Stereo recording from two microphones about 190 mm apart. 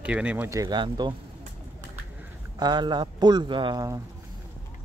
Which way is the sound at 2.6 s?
25° right (ahead or behind).